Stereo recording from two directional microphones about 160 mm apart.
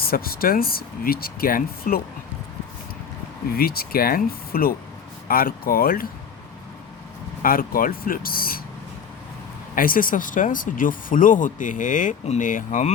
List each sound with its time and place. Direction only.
0.0 s speech: 65° left (ahead or behind)
3.6 s speech: 70° left (ahead or behind)
7.4 s speech: 60° left (ahead or behind)
9.7 s speech: 60° left (ahead or behind)